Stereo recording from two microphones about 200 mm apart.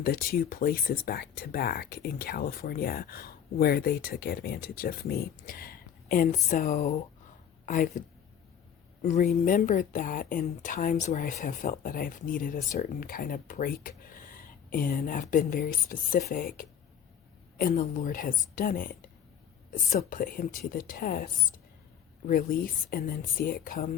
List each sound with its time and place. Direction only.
0.0 s a woman's voice: 50° left (ahead or behind)
9.0 s speech: 35° left (ahead or behind)
22.3 s speech: 45° left (ahead or behind)